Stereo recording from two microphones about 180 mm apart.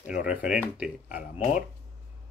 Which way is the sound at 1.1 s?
45° left (ahead or behind).